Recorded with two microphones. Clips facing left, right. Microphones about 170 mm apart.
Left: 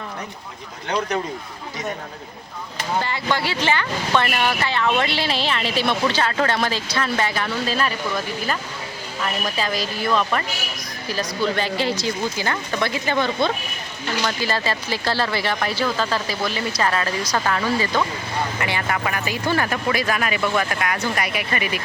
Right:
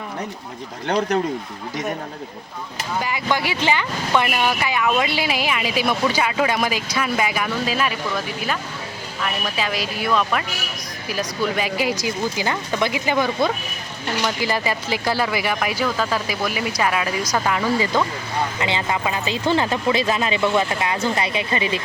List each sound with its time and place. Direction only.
3.0 s speech: 10° right (ahead or behind)
9.2 s speech: 5° right (ahead or behind); by 21.8 s 25° right (ahead or behind)